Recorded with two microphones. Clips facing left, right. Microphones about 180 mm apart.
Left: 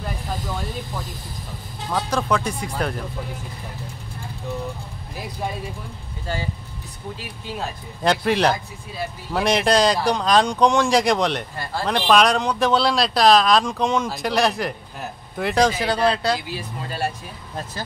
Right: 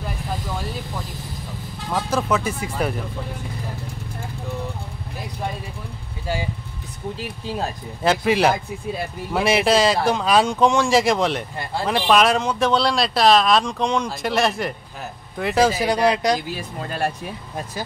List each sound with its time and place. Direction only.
1.9 s speech: centre (ahead or behind)
8.0 s speech: 5° right (ahead or behind)
16.5 s speech: 55° right (ahead or behind)